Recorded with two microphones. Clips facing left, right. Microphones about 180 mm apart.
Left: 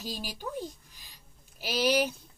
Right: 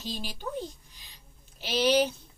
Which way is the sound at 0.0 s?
10° left (ahead or behind).